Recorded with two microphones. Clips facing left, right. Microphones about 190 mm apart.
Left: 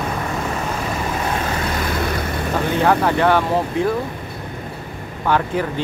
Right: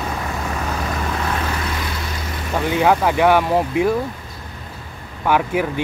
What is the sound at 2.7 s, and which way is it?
Speech, 10° right (ahead or behind).